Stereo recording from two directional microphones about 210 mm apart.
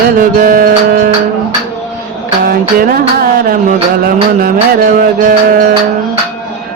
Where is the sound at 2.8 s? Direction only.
45° right (ahead or behind).